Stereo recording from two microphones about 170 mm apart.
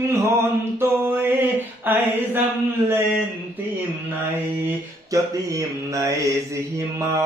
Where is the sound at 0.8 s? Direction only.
15° right (ahead or behind).